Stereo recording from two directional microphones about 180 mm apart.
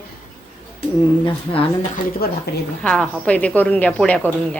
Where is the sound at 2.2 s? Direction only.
60° left (ahead or behind).